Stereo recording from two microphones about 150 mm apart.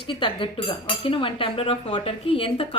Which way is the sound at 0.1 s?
35° left (ahead or behind).